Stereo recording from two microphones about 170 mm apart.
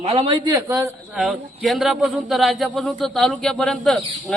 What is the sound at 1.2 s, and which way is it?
Speech, centre (ahead or behind).